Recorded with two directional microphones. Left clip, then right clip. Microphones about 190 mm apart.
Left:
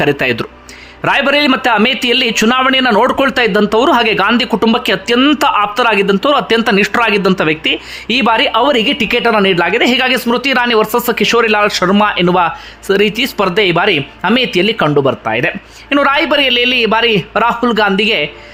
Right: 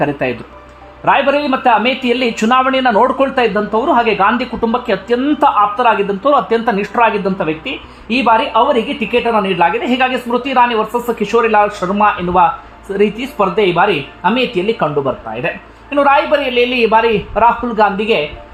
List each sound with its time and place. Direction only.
0.0 s speech: 20° left (ahead or behind)